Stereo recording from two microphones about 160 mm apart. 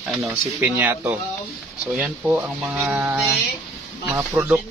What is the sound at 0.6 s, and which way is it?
Speech, 15° right (ahead or behind).